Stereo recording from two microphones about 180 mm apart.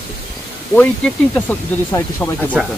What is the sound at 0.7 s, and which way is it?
Speech, 10° left (ahead or behind).